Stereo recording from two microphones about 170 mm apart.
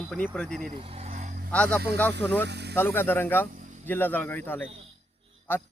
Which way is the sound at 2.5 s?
80° right.